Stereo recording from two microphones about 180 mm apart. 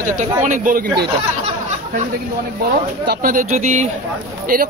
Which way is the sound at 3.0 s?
50° right (ahead or behind).